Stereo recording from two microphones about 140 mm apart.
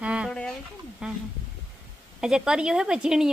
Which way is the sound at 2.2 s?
5° right (ahead or behind).